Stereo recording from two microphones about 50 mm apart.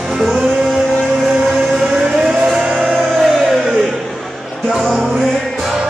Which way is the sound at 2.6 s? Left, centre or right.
Centre.